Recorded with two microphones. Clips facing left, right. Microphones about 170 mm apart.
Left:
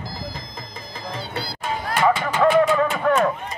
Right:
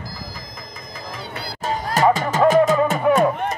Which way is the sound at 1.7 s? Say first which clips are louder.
Right 3 dB; 40° right (ahead or behind).